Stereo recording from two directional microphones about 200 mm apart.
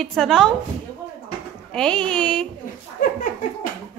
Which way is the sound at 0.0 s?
Centre (ahead or behind).